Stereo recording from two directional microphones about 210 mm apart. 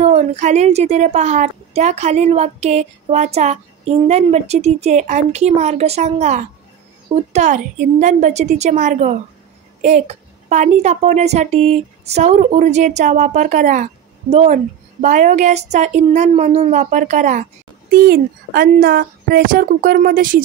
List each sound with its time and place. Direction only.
0.0 s a woman's voice: 30° right (ahead or behind)